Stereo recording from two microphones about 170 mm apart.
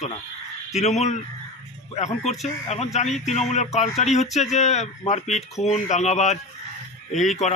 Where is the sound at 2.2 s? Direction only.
40° left (ahead or behind).